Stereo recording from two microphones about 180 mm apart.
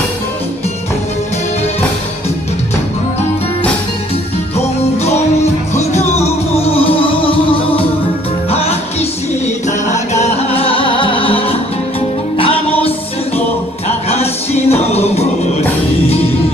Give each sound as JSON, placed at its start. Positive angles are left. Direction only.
{"t": 5.0, "sound": "music", "side_deg": 40}
{"t": 10.2, "sound": "music", "side_deg": 35}
{"t": 14.0, "sound": "music", "side_deg": 35}